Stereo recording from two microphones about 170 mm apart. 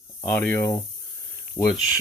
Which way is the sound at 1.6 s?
25° left (ahead or behind).